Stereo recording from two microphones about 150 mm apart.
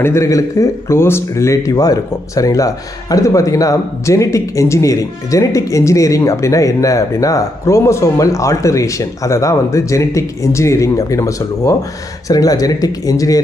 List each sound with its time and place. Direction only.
0.0 s speech: 20° left (ahead or behind)